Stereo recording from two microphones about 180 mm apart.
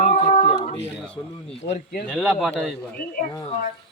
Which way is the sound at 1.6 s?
65° left (ahead or behind).